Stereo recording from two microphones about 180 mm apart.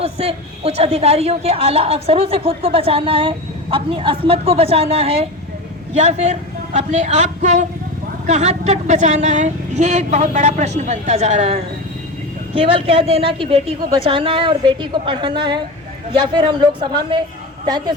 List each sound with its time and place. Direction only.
0.0 s a woman's voice: 35° right (ahead or behind)